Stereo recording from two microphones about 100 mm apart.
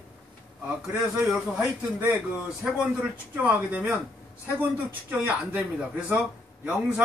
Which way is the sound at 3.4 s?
15° right (ahead or behind).